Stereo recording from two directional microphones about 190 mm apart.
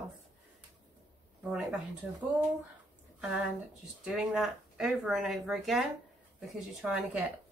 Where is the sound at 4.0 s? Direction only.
5° right (ahead or behind).